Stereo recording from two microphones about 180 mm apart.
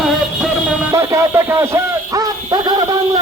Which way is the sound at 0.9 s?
15° right (ahead or behind).